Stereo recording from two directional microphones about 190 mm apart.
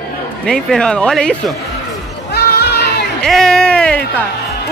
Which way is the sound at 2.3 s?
55° left (ahead or behind).